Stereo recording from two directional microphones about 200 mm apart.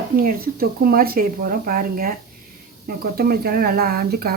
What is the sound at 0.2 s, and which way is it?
Speech, 50° right (ahead or behind).